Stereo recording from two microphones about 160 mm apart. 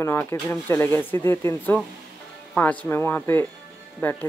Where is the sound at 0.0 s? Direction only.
15° left (ahead or behind).